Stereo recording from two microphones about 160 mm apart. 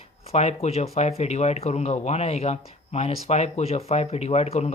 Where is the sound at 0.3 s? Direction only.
40° left (ahead or behind).